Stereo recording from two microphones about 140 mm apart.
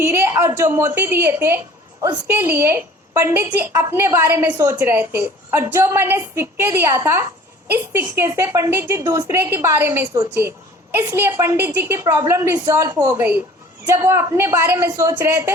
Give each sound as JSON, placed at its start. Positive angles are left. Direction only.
{"t": 0.0, "sound": "a woman's voice", "side_deg": -15}